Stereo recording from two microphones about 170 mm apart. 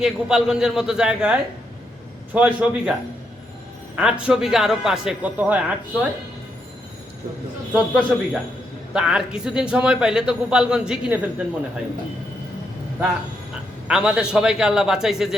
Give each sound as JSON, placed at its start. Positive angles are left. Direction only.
{"t": 0.0, "sound": "a man's voice", "side_deg": -5}
{"t": 3.9, "sound": "a man's voice", "side_deg": -5}
{"t": 7.7, "sound": "a man's voice", "side_deg": -5}
{"t": 13.8, "sound": "a man's voice", "side_deg": -5}